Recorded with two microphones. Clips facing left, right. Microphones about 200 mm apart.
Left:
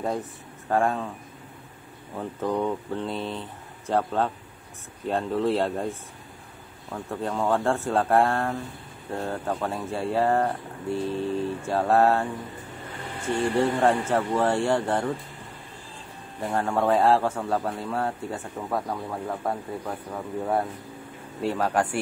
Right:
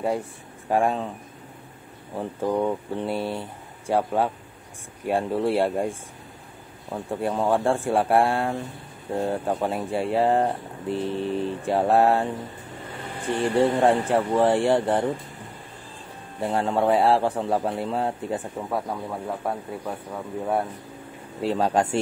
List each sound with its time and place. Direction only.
0.0 s speech: 10° right (ahead or behind)
2.1 s speech: 10° right (ahead or behind)
6.9 s speech: 15° right (ahead or behind)
13.3 s speech: 15° right (ahead or behind)
16.3 s speech: 15° right (ahead or behind)
18.7 s speech: centre (ahead or behind)
21.4 s speech: 20° right (ahead or behind)